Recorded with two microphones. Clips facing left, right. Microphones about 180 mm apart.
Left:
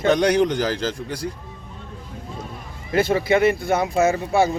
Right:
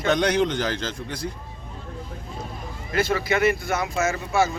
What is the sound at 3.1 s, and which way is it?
Speech, 25° left (ahead or behind).